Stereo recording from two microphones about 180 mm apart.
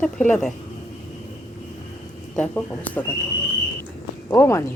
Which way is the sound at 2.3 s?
10° left (ahead or behind).